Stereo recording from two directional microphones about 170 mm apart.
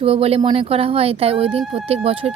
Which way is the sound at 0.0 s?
35° right (ahead or behind).